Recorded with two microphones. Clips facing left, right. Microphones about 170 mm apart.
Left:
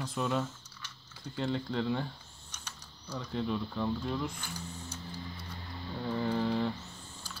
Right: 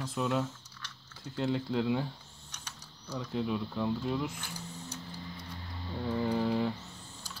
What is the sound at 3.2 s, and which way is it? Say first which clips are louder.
Speech: right 1 dB; 5° right (ahead or behind).